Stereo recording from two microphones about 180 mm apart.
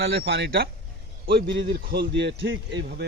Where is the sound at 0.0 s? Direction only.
70° right (ahead or behind).